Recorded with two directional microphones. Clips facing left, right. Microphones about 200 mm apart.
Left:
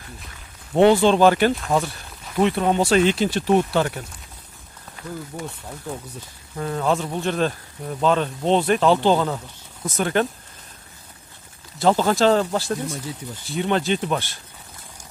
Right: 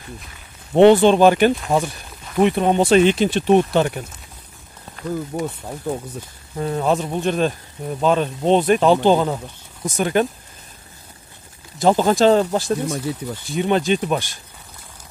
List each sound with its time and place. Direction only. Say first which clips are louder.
0.7 s speech: right 4 dB; 20° right (ahead or behind)
5.3 s speech: right 8 dB; 50° right (ahead or behind)
6.5 s speech: right 3 dB; 20° right (ahead or behind)
11.8 s speech: right 3 dB; 15° right (ahead or behind)
13.1 s speech: right 7 dB; 65° right (ahead or behind)
13.6 s speech: right 3 dB; 15° right (ahead or behind)